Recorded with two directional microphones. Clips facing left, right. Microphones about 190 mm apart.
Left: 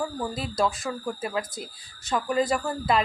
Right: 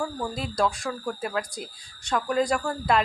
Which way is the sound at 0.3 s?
Centre (ahead or behind).